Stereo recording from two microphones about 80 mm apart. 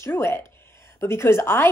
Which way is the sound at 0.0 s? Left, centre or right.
Left.